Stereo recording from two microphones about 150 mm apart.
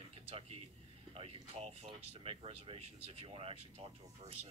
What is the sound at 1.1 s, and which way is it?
Speech, 40° right (ahead or behind).